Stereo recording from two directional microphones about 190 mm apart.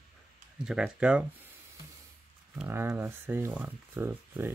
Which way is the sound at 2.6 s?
10° right (ahead or behind).